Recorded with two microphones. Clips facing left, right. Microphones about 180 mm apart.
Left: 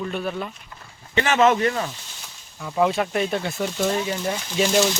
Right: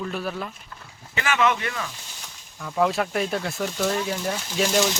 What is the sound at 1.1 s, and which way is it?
Speech, 35° left (ahead or behind).